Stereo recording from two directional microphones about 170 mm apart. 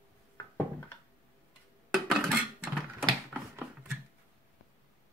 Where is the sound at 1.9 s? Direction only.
Centre (ahead or behind).